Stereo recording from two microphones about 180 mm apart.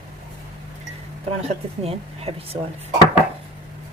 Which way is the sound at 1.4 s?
35° right (ahead or behind).